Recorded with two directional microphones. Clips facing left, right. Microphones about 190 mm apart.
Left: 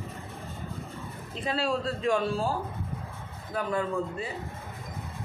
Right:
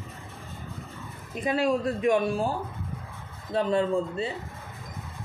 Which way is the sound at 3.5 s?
25° right (ahead or behind).